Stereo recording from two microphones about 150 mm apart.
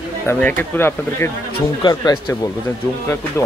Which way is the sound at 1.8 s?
30° left (ahead or behind).